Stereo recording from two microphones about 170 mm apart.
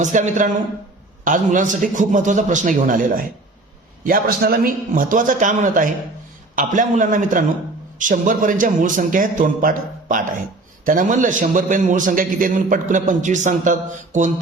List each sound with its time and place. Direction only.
0.0 s a man's voice: 50° right (ahead or behind)